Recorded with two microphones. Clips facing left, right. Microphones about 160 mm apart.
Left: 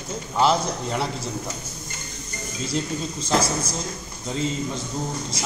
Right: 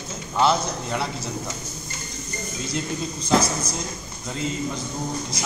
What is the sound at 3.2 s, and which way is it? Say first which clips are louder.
Speech: right 2 dB; 30° left (ahead or behind).